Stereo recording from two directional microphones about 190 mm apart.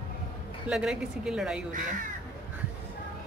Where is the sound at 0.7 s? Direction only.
5° right (ahead or behind).